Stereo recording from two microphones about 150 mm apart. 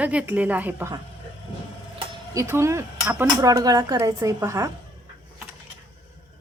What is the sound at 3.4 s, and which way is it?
Speech, 25° right (ahead or behind).